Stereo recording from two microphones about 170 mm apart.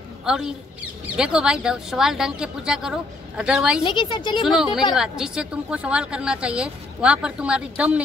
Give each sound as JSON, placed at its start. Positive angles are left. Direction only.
{"t": 0.2, "sound": "a man's voice", "side_deg": -5}
{"t": 3.8, "sound": "a woman's voice", "side_deg": 30}
{"t": 4.5, "sound": "speech", "side_deg": -5}